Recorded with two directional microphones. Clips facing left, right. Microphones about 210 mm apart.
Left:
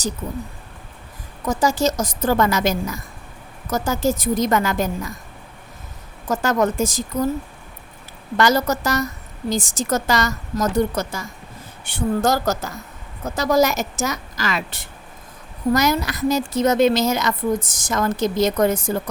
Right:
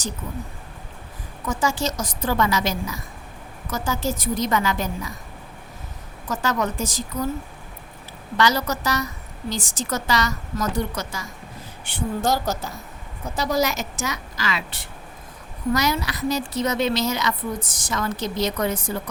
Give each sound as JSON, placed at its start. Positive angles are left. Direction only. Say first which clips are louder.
{"t": 1.5, "sound": "a woman's voice", "louder": "left 5 dB", "side_deg": 40}
{"t": 6.2, "sound": "a woman's voice", "louder": "left 5 dB", "side_deg": 50}
{"t": 8.4, "sound": "a woman's voice", "louder": "left 4 dB", "side_deg": 50}